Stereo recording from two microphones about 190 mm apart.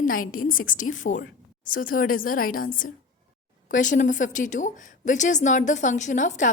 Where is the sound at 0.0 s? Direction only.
45° left (ahead or behind).